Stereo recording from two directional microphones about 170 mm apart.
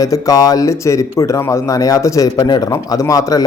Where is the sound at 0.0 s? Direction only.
20° left (ahead or behind).